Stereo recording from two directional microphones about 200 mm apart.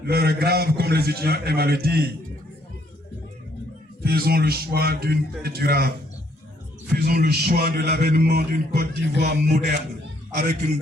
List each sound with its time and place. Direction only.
0.0 s a man's voice: 50° right (ahead or behind)
4.0 s a man's voice: 50° right (ahead or behind)
6.9 s a man's voice: 50° right (ahead or behind)